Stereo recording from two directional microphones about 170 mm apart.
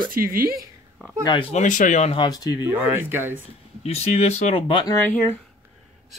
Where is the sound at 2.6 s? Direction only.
10° right (ahead or behind).